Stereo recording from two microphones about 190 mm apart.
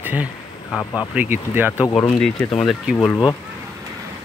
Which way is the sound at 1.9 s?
5° left (ahead or behind).